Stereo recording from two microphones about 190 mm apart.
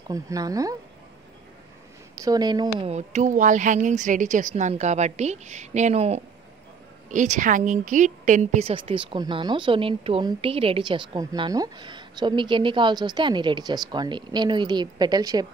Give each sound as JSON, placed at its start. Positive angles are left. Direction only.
{"t": 0.1, "sound": "speech", "side_deg": -20}
{"t": 2.2, "sound": "a woman's voice", "side_deg": -20}
{"t": 2.9, "sound": "a woman's voice", "side_deg": -35}